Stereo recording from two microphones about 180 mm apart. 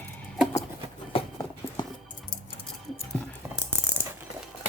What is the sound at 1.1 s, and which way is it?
Clip-clop, 30° left (ahead or behind).